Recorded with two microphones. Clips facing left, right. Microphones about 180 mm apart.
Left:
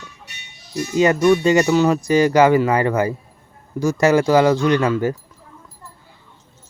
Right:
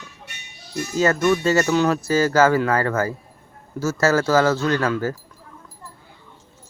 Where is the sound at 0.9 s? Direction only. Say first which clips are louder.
Left 4 dB; 15° left (ahead or behind).